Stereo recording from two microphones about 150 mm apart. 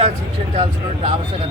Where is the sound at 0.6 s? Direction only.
40° right (ahead or behind).